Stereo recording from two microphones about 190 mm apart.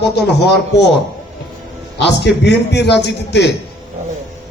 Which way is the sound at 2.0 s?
65° left (ahead or behind).